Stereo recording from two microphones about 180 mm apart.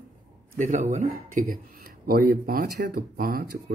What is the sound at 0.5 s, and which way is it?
Speech, 45° right (ahead or behind).